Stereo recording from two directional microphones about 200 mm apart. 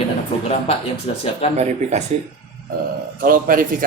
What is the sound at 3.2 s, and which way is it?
Speech, 45° right (ahead or behind).